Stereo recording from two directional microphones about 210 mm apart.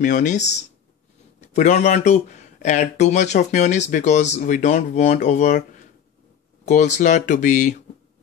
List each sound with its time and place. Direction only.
0.0 s speech: 35° left (ahead or behind)
6.6 s speech: 35° left (ahead or behind)